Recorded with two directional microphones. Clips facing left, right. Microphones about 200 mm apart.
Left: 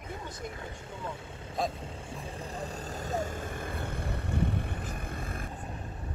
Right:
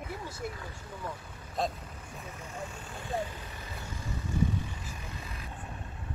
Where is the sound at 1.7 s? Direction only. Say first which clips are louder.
Left 5 dB; 25° left (ahead or behind); by 5.6 s 50° left (ahead or behind).